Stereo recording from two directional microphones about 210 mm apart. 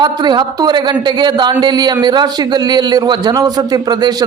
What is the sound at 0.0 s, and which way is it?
A man's voice, 20° right (ahead or behind).